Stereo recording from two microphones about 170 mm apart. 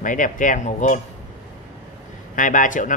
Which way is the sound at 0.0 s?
50° left (ahead or behind).